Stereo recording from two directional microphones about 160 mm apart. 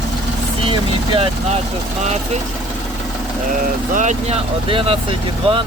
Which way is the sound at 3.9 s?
50° right (ahead or behind).